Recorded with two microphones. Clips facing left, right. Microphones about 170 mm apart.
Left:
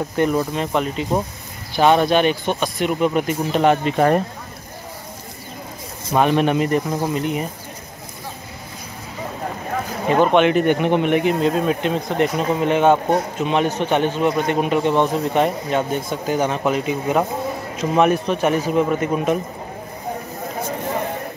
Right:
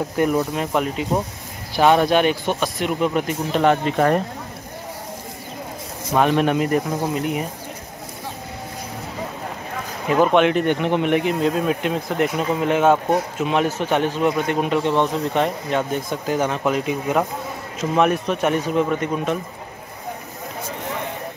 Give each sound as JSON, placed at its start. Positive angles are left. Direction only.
{"t": 0.2, "sound": "speech", "side_deg": -5}
{"t": 6.1, "sound": "speech", "side_deg": 0}
{"t": 10.0, "sound": "speech", "side_deg": 0}